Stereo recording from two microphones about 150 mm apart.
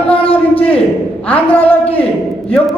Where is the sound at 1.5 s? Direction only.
10° left (ahead or behind).